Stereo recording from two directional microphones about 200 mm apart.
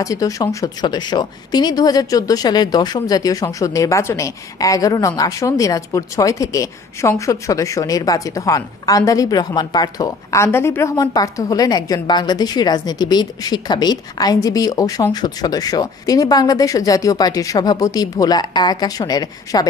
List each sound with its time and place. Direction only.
0.0 s speech: 15° left (ahead or behind)